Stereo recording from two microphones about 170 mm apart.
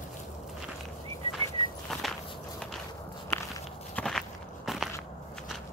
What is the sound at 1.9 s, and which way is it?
Walk, centre (ahead or behind).